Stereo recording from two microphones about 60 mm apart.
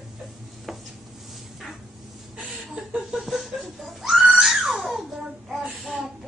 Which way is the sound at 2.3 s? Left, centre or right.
Centre.